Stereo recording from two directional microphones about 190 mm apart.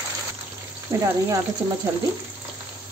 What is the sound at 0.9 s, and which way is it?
Speech, 15° right (ahead or behind).